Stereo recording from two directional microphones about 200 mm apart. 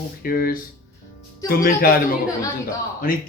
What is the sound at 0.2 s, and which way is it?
A man's voice, 45° left (ahead or behind).